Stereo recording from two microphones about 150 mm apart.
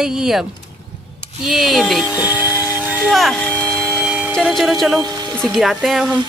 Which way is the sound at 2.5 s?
25° left (ahead or behind).